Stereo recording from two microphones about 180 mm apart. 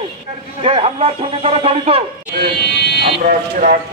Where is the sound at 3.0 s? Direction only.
50° right (ahead or behind).